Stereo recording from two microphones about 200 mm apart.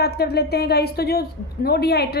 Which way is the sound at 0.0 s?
55° left (ahead or behind).